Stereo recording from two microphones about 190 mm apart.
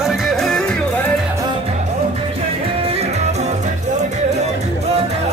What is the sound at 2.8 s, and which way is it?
Music, 30° right (ahead or behind).